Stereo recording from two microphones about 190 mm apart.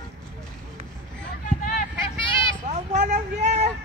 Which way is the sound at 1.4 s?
45° left (ahead or behind).